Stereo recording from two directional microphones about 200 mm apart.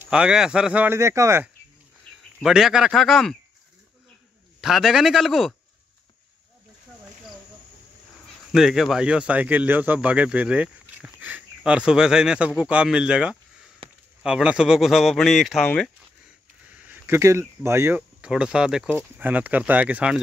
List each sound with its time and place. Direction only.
0.0 s speech: 5° right (ahead or behind)
2.4 s speech: centre (ahead or behind)
4.6 s speech: centre (ahead or behind)
8.5 s speech: centre (ahead or behind)
13.8 s a sound: 25° right (ahead or behind)
14.2 s speech: 5° right (ahead or behind)
16.7 s speech: 10° right (ahead or behind)